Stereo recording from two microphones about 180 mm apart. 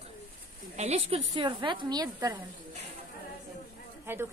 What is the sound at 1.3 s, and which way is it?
A woman's voice, 25° right (ahead or behind).